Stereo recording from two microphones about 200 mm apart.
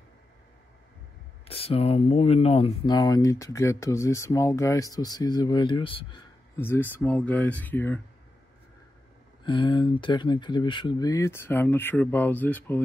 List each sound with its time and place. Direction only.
1.4 s speech: 30° left (ahead or behind)
6.5 s speech: 10° left (ahead or behind)
9.4 s speech: 25° left (ahead or behind)